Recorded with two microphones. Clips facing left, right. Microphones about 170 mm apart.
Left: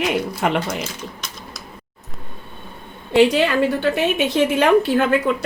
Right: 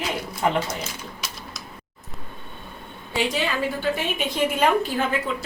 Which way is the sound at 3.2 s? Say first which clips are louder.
Left 10 dB; 65° left (ahead or behind).